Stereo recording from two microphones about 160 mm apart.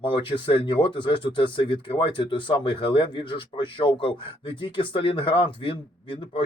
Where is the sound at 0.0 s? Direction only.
30° left (ahead or behind).